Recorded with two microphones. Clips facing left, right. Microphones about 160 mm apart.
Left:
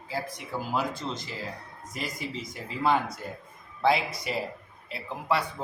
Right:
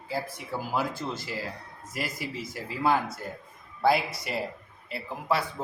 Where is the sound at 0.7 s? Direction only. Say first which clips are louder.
Even; 20° left (ahead or behind).